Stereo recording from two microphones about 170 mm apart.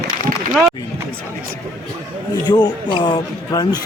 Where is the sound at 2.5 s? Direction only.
25° left (ahead or behind).